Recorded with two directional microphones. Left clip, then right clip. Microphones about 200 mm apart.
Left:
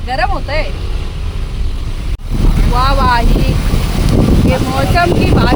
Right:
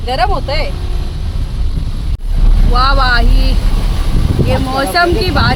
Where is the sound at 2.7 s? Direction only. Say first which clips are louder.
Right 1 dB; 10° right (ahead or behind).